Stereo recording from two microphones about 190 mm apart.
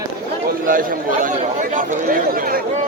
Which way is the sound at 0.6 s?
45° right (ahead or behind).